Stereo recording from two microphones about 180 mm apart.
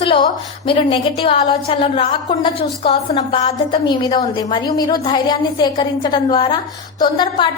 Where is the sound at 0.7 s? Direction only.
30° left (ahead or behind).